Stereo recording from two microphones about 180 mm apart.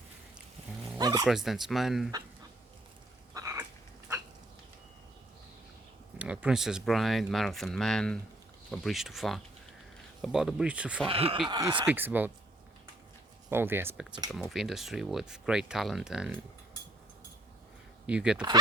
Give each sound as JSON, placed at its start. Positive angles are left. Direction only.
{"t": 0.9, "sound": "dog", "side_deg": -20}
{"t": 1.3, "sound": "speech", "side_deg": 0}
{"t": 3.3, "sound": "a sound", "side_deg": -15}
{"t": 6.1, "sound": "speech", "side_deg": -5}
{"t": 11.0, "sound": "speech", "side_deg": -30}
{"t": 11.9, "sound": "speech", "side_deg": -10}
{"t": 13.5, "sound": "speech", "side_deg": -10}
{"t": 18.0, "sound": "speech", "side_deg": -5}